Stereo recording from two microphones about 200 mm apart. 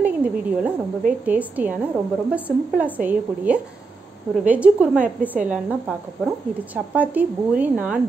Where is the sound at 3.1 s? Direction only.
5° right (ahead or behind).